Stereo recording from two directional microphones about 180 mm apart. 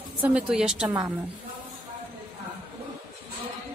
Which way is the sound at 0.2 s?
5° right (ahead or behind).